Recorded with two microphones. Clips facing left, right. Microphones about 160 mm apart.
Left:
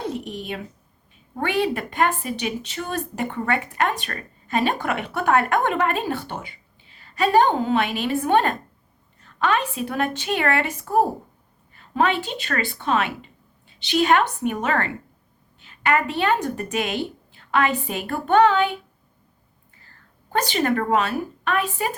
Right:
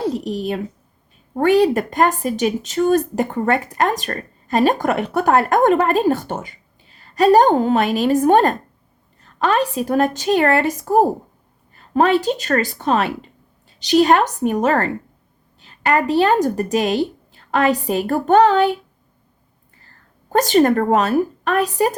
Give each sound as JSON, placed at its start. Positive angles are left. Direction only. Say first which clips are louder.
{"t": 0.0, "sound": "speech", "louder": "right 7 dB", "side_deg": -35}
{"t": 20.3, "sound": "speech", "louder": "right 8 dB", "side_deg": -40}